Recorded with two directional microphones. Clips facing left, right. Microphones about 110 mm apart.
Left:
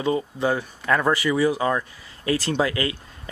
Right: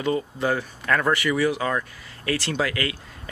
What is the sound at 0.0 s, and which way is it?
Speech, 25° left (ahead or behind).